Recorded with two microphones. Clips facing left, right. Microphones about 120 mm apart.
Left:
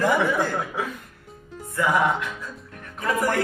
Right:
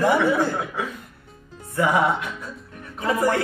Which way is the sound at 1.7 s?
20° right (ahead or behind).